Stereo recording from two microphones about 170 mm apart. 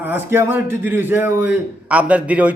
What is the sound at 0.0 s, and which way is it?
A man's voice, 10° right (ahead or behind).